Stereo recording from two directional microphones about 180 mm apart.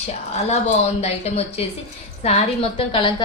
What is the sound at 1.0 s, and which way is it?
A woman's voice, 35° left (ahead or behind).